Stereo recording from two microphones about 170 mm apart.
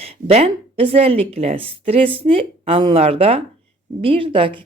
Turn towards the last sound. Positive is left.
turn(degrees=-30)  # may be behind; listen again after turning